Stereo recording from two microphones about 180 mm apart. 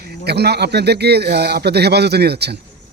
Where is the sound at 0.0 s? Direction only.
65° right (ahead or behind).